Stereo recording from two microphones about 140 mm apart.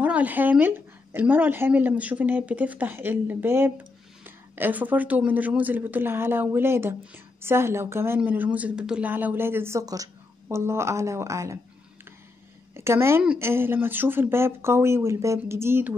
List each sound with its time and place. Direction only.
0.0 s speech: 10° right (ahead or behind)
12.7 s speech: 20° right (ahead or behind)